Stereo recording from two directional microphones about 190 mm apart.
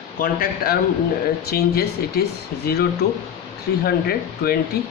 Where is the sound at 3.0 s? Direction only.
55° left (ahead or behind).